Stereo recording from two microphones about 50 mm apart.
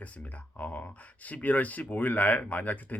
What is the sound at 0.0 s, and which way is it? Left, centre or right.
Speech, left.